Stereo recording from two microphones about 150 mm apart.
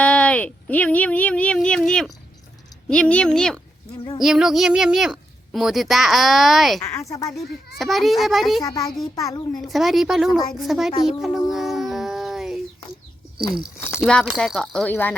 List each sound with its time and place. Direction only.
0.0 s a sound: 10° left (ahead or behind)
2.9 s speech: 5° left (ahead or behind)
6.9 s speech: 20° left (ahead or behind)
7.8 s speech: centre (ahead or behind)
8.6 s speech: 25° left (ahead or behind)
9.5 s speech: centre (ahead or behind)
11.2 s a sound: centre (ahead or behind)
14.0 s speech: 5° left (ahead or behind)